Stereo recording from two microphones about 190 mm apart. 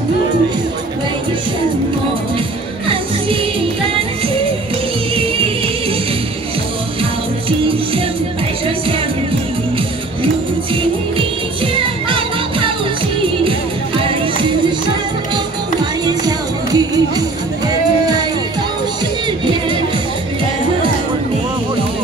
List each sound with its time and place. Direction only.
5.1 s music: 30° right (ahead or behind)
7.4 s music: 30° right (ahead or behind)
11.1 s music: 25° right (ahead or behind)
15.3 s music: 20° right (ahead or behind)